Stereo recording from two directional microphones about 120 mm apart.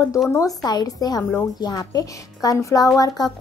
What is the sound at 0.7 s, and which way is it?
A woman's voice, 35° left (ahead or behind).